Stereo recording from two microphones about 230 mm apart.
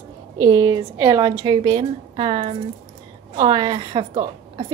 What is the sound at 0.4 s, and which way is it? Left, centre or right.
A woman's voice, centre.